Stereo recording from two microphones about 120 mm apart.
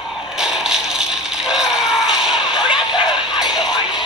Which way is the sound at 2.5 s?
40° left (ahead or behind).